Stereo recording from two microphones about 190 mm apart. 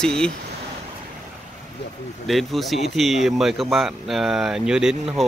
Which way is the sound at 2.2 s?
Centre (ahead or behind).